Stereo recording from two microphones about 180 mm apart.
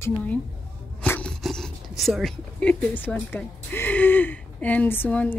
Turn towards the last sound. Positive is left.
turn(degrees=10)  # may be behind; listen again after turning